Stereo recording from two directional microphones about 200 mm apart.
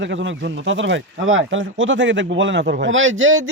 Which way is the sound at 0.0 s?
65° right (ahead or behind).